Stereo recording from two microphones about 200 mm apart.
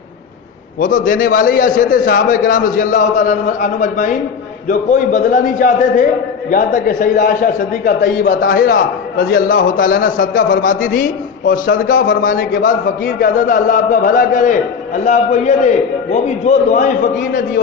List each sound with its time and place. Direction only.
0.8 s a man's voice: 40° left (ahead or behind)